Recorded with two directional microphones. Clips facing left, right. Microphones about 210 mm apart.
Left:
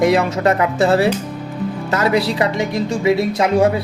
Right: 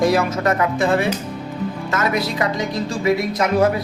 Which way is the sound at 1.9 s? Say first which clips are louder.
Left 5 dB; 30° left (ahead or behind).